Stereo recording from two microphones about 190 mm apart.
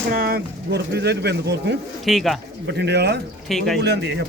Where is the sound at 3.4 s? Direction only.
Centre (ahead or behind).